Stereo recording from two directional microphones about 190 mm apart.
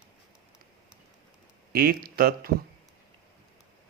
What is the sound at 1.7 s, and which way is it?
Speech, 50° right (ahead or behind).